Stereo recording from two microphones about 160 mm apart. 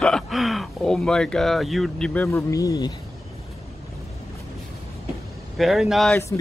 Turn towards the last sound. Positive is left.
turn(degrees=0)  # may be behind; listen again after turning